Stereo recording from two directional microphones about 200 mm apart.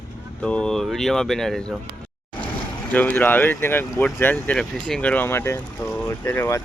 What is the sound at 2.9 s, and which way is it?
Speech, 5° left (ahead or behind).